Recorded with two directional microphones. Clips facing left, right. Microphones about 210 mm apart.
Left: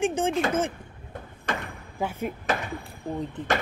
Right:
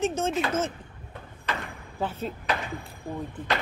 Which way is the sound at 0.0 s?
15° left (ahead or behind).